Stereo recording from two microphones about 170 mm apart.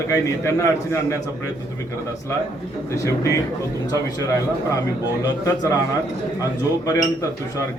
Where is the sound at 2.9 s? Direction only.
20° left (ahead or behind).